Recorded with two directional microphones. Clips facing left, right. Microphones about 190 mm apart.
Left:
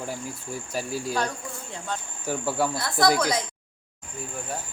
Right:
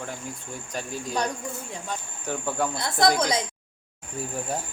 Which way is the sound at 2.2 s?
5° left (ahead or behind).